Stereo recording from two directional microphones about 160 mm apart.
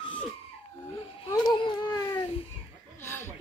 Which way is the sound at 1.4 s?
25° left (ahead or behind).